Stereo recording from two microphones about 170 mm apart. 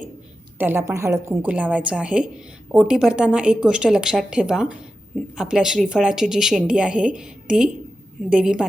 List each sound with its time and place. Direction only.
0.6 s a woman's voice: 15° right (ahead or behind)